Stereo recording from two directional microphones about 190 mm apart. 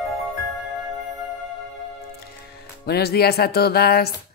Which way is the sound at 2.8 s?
55° left (ahead or behind).